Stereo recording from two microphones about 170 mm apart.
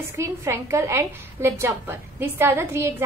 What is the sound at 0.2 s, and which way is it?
A woman's voice, 15° right (ahead or behind).